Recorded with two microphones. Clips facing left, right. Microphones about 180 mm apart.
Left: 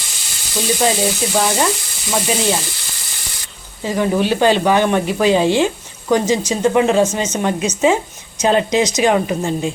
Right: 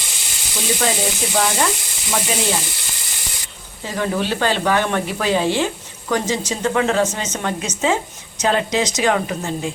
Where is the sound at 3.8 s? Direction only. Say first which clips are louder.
Left 5 dB; 15° left (ahead or behind).